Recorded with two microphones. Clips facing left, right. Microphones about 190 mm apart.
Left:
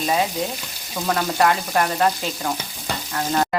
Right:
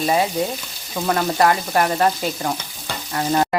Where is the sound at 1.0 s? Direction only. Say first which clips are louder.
Right 2 dB; 5° right (ahead or behind).